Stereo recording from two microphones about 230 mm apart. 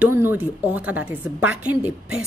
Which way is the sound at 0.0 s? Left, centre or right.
Centre.